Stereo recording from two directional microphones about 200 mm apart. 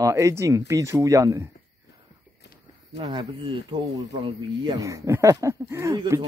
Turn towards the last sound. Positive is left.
turn(degrees=-20)  # may be behind; listen again after turning